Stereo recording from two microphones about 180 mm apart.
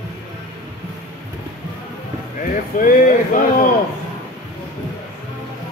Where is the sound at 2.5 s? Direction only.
50° left (ahead or behind).